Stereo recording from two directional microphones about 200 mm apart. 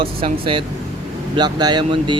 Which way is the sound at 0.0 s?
30° right (ahead or behind).